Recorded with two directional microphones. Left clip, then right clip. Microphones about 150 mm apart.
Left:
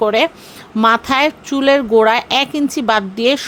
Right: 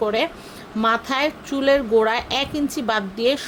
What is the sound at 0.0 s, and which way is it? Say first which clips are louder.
A woman's voice: left 7 dB; 45° left (ahead or behind).